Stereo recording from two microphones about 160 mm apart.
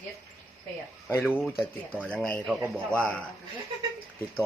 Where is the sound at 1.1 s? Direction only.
15° left (ahead or behind).